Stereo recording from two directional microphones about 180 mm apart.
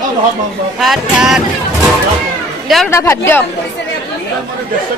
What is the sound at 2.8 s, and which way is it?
Speech, 15° left (ahead or behind).